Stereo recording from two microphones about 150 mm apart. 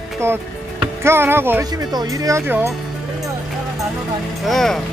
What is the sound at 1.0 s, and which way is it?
Speech, 15° right (ahead or behind).